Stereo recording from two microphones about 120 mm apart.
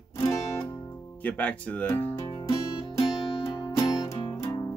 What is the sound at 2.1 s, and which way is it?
Music, 50° left (ahead or behind).